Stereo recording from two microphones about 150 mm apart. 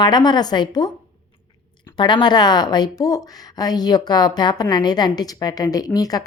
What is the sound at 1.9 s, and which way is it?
Speech, 30° left (ahead or behind).